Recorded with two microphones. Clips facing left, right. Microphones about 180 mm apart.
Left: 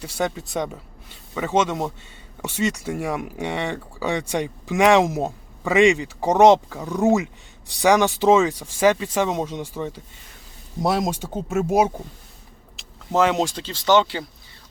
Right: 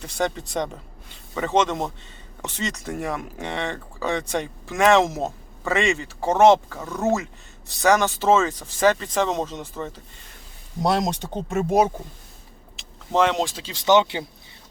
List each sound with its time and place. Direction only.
0.0 s speech: 10° left (ahead or behind)
13.7 s speech: 20° right (ahead or behind)